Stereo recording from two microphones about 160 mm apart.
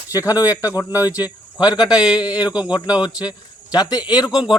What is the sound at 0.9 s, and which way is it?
Speech, 10° right (ahead or behind).